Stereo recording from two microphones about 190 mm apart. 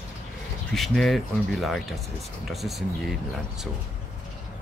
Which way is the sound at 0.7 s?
Centre (ahead or behind).